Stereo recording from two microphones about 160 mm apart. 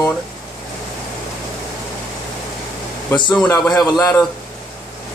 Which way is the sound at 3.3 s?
5° left (ahead or behind).